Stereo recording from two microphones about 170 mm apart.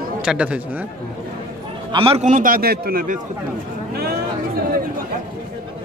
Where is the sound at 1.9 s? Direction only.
35° right (ahead or behind); by 3.2 s 55° right (ahead or behind).